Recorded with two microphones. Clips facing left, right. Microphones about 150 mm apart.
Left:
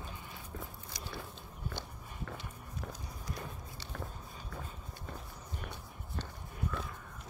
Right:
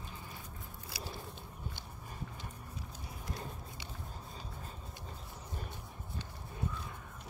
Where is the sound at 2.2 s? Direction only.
75° left (ahead or behind).